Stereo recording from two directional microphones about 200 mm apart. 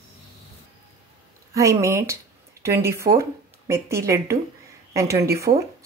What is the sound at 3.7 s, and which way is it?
A woman's voice, 15° right (ahead or behind).